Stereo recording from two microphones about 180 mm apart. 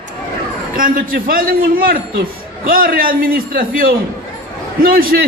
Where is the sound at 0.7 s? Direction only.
50° right (ahead or behind).